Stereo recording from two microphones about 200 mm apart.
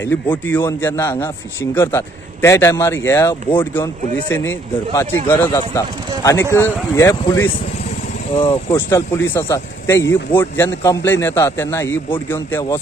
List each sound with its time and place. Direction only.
0.0 s a man's voice: 10° left (ahead or behind)
8.4 s speech: 30° left (ahead or behind)
8.7 s a man's voice: 10° left (ahead or behind)